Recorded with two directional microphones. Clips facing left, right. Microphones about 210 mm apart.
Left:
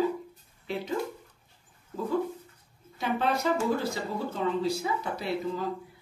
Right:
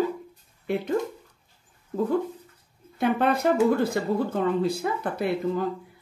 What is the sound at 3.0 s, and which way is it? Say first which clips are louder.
Speech: right 5 dB; 55° right (ahead or behind).